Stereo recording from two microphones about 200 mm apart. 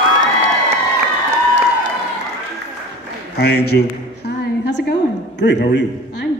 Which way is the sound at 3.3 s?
55° left (ahead or behind).